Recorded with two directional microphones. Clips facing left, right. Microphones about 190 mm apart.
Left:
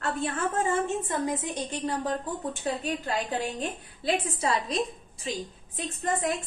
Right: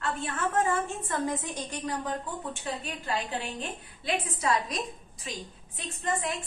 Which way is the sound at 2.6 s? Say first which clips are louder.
Left 7 dB; 40° left (ahead or behind).